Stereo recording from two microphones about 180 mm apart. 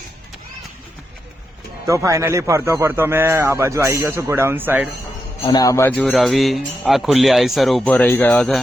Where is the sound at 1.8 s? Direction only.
15° right (ahead or behind).